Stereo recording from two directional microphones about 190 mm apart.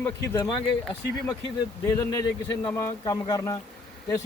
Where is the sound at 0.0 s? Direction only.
20° left (ahead or behind).